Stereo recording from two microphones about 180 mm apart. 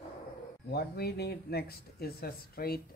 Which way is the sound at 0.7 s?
60° left (ahead or behind).